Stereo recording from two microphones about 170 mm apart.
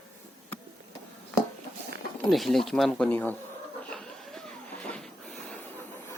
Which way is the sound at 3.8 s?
5° left (ahead or behind).